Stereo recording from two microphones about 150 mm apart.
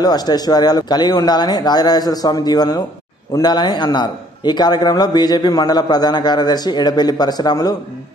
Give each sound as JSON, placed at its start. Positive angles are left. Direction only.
{"t": 0.0, "sound": "a man's voice", "side_deg": 25}